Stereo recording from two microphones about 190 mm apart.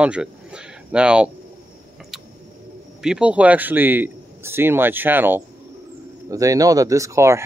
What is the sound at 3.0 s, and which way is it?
Speech, 5° right (ahead or behind).